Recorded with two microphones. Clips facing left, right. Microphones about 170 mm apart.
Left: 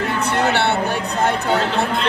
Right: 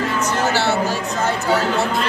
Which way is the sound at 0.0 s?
60° left (ahead or behind).